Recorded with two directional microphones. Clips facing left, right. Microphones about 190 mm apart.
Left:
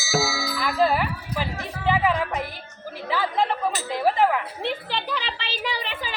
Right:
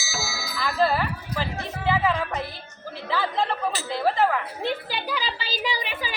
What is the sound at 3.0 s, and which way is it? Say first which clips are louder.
Chatter: left 2 dB; 15° left (ahead or behind).